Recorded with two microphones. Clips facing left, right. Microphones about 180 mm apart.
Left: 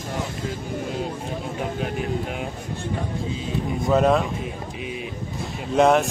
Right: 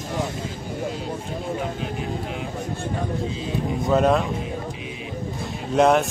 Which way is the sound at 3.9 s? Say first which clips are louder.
Even; centre (ahead or behind).